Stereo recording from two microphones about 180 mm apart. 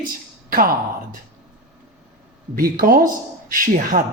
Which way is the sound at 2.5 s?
55° right (ahead or behind).